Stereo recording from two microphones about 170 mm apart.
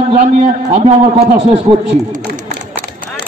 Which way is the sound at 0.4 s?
35° right (ahead or behind).